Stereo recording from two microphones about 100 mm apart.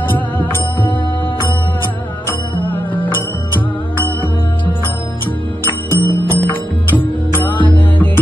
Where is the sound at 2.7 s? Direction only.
15° left (ahead or behind).